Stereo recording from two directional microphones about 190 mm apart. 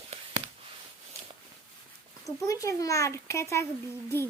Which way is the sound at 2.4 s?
15° left (ahead or behind).